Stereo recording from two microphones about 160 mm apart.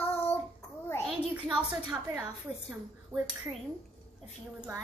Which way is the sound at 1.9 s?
10° right (ahead or behind).